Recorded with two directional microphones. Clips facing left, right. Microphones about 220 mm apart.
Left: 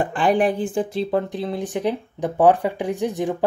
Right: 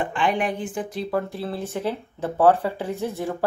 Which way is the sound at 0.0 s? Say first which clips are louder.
Left 5 dB; 40° left (ahead or behind).